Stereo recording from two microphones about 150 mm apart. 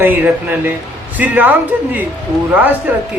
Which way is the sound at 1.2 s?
10° right (ahead or behind).